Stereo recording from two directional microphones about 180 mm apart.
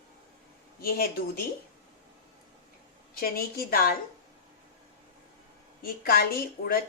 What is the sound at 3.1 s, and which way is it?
Speech, 55° left (ahead or behind).